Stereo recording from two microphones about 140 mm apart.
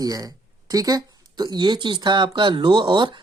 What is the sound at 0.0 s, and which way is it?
Speech, 25° right (ahead or behind).